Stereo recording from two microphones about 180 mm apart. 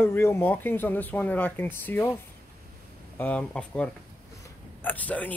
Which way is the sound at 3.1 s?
10° left (ahead or behind).